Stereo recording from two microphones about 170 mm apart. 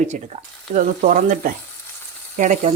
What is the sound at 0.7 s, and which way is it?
Frying, 50° right (ahead or behind).